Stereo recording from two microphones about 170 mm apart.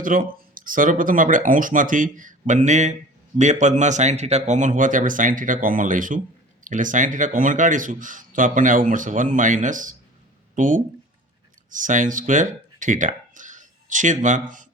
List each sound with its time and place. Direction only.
0.0 s speech: 55° right (ahead or behind)